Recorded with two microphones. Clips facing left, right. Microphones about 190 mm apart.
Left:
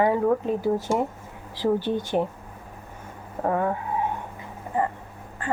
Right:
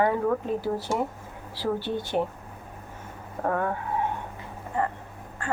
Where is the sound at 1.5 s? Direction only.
15° left (ahead or behind).